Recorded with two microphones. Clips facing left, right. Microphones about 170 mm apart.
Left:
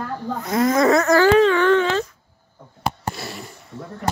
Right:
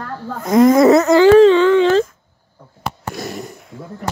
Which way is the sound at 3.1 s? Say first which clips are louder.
Right 6 dB; 45° right (ahead or behind).